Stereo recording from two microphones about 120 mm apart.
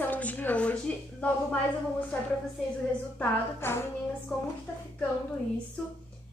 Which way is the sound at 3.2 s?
20° left (ahead or behind).